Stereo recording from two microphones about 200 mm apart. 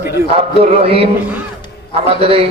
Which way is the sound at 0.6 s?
30° right (ahead or behind).